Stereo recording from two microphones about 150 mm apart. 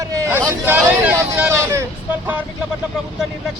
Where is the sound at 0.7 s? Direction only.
10° right (ahead or behind).